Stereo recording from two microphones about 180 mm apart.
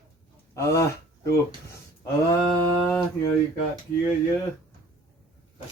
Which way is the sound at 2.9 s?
15° left (ahead or behind).